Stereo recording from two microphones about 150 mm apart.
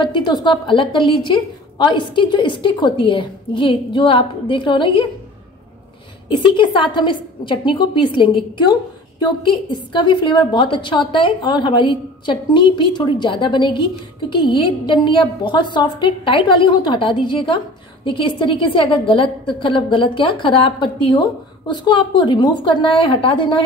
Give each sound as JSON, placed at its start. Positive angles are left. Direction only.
{"t": 0.0, "sound": "a woman's voice", "side_deg": 30}
{"t": 6.3, "sound": "a woman's voice", "side_deg": 35}